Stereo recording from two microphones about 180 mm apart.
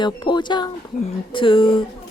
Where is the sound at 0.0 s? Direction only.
25° left (ahead or behind).